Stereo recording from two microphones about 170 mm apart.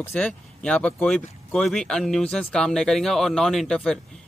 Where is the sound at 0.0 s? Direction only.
10° left (ahead or behind).